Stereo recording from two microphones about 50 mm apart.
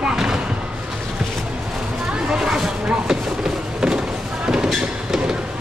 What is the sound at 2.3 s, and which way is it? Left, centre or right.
Speech, centre.